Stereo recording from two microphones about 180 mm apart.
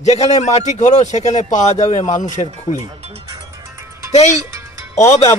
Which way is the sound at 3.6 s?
15° right (ahead or behind).